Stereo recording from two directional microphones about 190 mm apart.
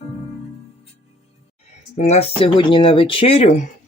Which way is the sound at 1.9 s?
35° left (ahead or behind).